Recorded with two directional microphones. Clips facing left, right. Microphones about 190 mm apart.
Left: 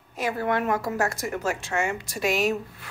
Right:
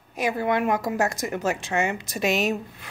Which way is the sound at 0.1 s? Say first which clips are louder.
Right 2 dB; 15° right (ahead or behind).